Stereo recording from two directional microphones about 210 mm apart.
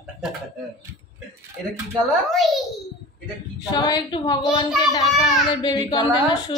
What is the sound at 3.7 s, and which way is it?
A woman's voice, 20° left (ahead or behind).